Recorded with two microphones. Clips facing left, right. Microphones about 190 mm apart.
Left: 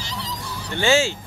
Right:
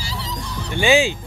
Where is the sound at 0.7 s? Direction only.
15° right (ahead or behind).